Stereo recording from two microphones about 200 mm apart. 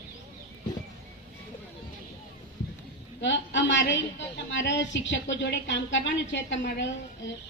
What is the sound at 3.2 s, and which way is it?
A woman's voice, 65° left (ahead or behind).